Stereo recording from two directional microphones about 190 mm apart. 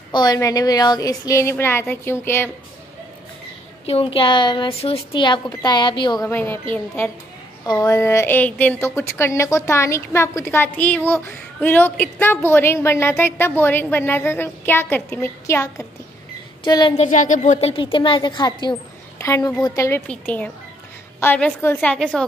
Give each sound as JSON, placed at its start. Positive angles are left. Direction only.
{"t": 0.1, "sound": "a woman's voice", "side_deg": 20}
{"t": 3.8, "sound": "speech", "side_deg": 30}
{"t": 6.2, "sound": "a woman's voice", "side_deg": 10}
{"t": 7.6, "sound": "a woman's voice", "side_deg": 20}
{"t": 16.9, "sound": "a woman's voice", "side_deg": 40}